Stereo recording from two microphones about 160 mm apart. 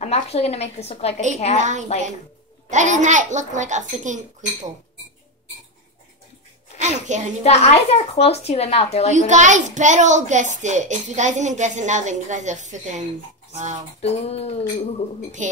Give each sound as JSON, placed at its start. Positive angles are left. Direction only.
{"t": 0.0, "sound": "speech", "side_deg": 40}
{"t": 1.6, "sound": "a woman's voice", "side_deg": -50}
{"t": 6.8, "sound": "a sound", "side_deg": -50}
{"t": 7.4, "sound": "speech", "side_deg": 40}
{"t": 9.1, "sound": "a woman's voice", "side_deg": -50}
{"t": 14.0, "sound": "speech", "side_deg": 40}
{"t": 15.4, "sound": "a woman's voice", "side_deg": -50}